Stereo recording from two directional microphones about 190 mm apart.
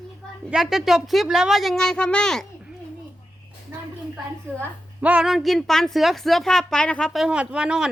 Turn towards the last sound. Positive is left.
turn(degrees=-5)  # may be behind; listen again after turning